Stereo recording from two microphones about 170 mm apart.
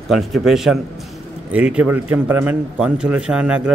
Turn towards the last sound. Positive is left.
turn(degrees=-5)  # may be behind; listen again after turning